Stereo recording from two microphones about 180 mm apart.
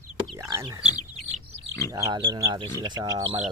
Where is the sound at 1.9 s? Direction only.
25° right (ahead or behind).